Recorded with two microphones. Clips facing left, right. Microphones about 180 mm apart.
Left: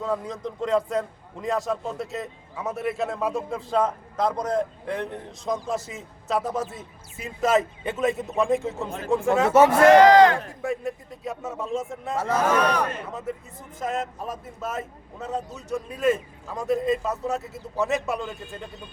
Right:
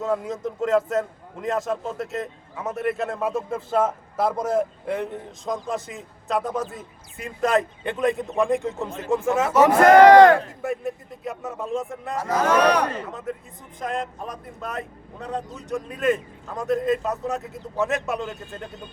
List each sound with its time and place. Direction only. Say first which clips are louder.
0.0 s a man's voice: right 3 dB; 5° right (ahead or behind)
9.8 s speech: right 4 dB; 50° right (ahead or behind)
10.6 s a man's voice: right 1 dB; centre (ahead or behind)
12.5 s a man's voice: right 6 dB; 75° right (ahead or behind)
13.1 s a man's voice: even; centre (ahead or behind)